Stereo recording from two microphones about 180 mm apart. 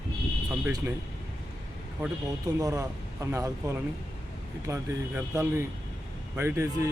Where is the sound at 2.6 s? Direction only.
20° right (ahead or behind).